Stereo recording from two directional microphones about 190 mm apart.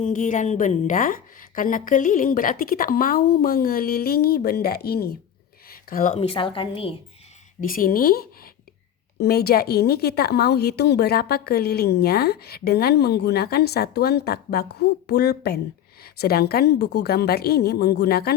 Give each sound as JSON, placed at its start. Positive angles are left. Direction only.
{"t": 0.0, "sound": "a woman's voice", "side_deg": 40}
{"t": 6.2, "sound": "a woman's voice", "side_deg": 25}
{"t": 7.6, "sound": "a woman's voice", "side_deg": 45}